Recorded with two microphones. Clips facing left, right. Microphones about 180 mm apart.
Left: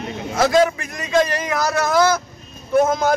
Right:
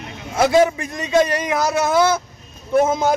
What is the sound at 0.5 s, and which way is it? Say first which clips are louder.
Speech: right 3 dB; 15° right (ahead or behind).